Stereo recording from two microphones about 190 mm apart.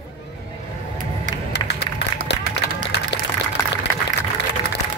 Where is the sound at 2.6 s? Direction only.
60° left (ahead or behind).